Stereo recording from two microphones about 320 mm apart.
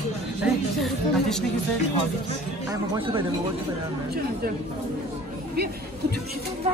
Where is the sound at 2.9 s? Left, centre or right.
Centre.